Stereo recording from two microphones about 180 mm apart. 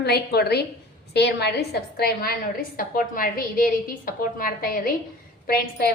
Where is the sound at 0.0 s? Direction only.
60° left (ahead or behind).